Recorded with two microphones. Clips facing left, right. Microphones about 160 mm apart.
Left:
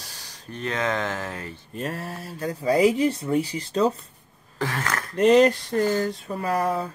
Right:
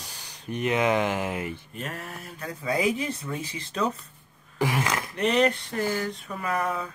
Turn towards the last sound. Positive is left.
turn(degrees=35)  # may be behind; listen again after turning